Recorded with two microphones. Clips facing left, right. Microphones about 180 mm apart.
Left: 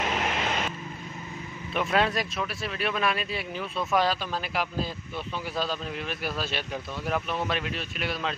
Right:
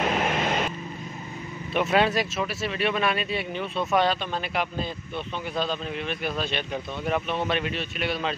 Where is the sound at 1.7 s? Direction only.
Centre (ahead or behind).